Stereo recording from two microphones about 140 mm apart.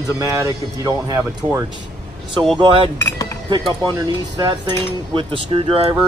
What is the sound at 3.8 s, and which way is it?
Speech, 30° right (ahead or behind).